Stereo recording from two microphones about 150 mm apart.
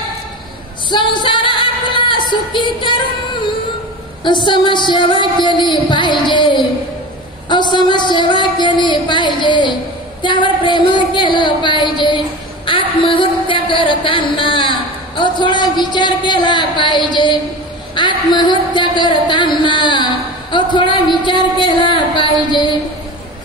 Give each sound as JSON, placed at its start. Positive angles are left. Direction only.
{"t": 0.8, "sound": "singing", "side_deg": 30}
{"t": 4.2, "sound": "music", "side_deg": 30}
{"t": 7.4, "sound": "a sound", "side_deg": 30}